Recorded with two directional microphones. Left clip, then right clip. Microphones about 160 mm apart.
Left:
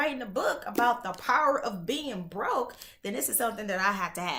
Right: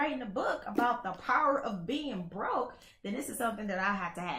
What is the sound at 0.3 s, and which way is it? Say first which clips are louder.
Speech: left 4 dB; 15° left (ahead or behind).